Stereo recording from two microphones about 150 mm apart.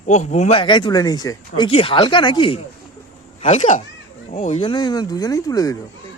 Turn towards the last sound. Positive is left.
turn(degrees=25)  # may be behind; listen again after turning